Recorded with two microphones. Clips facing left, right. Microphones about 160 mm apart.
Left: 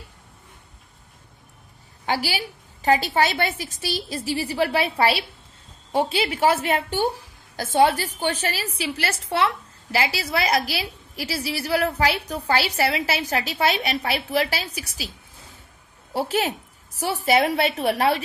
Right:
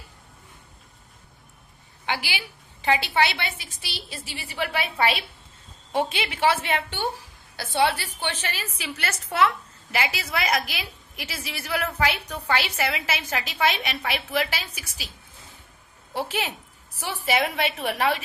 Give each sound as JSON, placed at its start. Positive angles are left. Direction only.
{"t": 2.0, "sound": "a woman's voice", "side_deg": 40}
{"t": 16.1, "sound": "a woman's voice", "side_deg": 40}